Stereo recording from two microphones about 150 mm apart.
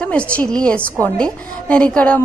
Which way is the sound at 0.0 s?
10° left (ahead or behind).